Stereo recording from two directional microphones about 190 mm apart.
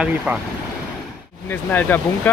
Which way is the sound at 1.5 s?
10° left (ahead or behind).